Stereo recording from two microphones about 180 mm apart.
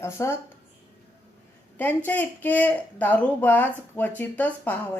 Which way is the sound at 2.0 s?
10° left (ahead or behind).